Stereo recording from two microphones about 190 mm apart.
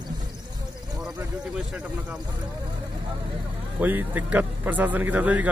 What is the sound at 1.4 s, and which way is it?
Speech, 5° right (ahead or behind).